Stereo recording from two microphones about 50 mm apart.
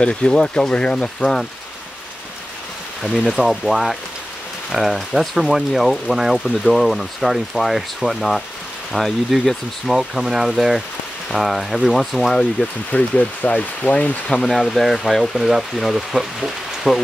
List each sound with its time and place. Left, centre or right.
0.0 s speech: left
3.0 s speech: centre
12.9 s speech: left
14.5 s speech: centre